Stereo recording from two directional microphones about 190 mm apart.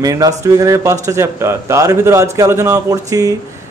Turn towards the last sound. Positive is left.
turn(degrees=-20)  # may be behind; listen again after turning